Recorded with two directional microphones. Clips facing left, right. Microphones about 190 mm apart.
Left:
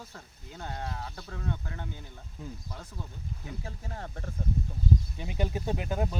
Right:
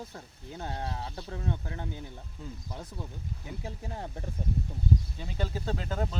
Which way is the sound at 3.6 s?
15° right (ahead or behind).